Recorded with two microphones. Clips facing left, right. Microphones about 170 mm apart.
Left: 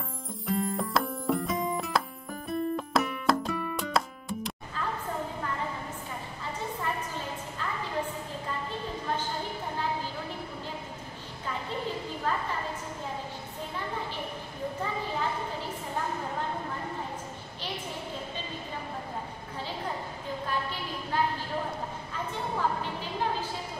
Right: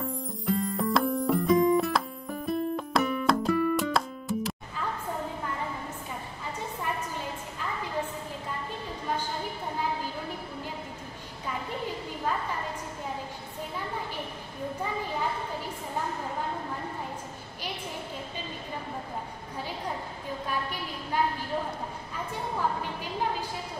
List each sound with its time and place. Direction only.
0.0 s music: centre (ahead or behind)